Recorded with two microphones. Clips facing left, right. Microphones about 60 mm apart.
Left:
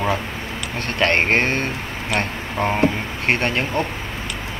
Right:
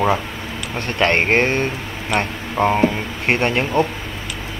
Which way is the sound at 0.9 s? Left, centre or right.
Centre.